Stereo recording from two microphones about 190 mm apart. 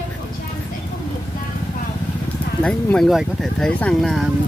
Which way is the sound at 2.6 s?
5° left (ahead or behind).